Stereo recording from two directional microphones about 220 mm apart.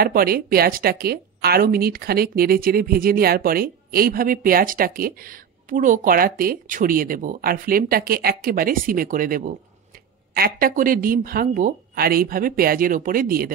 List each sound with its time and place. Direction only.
0.0 s a woman's voice: 40° right (ahead or behind)